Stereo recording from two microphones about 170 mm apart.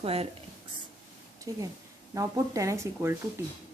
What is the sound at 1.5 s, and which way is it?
Speech, 20° right (ahead or behind).